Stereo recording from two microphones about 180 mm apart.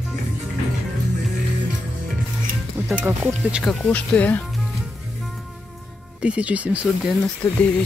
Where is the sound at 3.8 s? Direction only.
5° left (ahead or behind).